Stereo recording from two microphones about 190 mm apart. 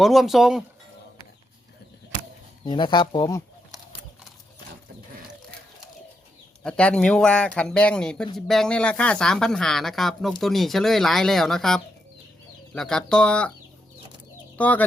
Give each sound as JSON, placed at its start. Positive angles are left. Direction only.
{"t": 0.0, "sound": "speech", "side_deg": 0}
{"t": 2.6, "sound": "speech", "side_deg": 25}
{"t": 6.6, "sound": "speech", "side_deg": 5}
{"t": 14.6, "sound": "speech", "side_deg": 10}